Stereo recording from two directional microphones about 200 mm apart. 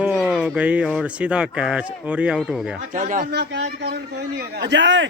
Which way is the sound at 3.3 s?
55° right (ahead or behind).